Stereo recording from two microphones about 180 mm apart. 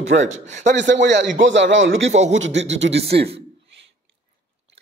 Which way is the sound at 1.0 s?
80° right.